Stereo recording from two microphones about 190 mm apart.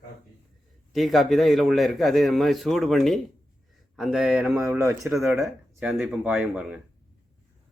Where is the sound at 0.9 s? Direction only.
Centre (ahead or behind).